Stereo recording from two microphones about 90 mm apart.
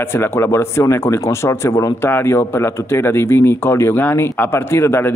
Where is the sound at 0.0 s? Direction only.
25° left (ahead or behind).